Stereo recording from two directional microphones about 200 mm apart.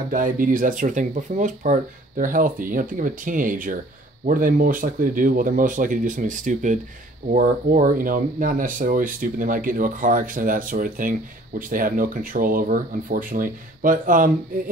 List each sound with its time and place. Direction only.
0.1 s speech: 45° right (ahead or behind)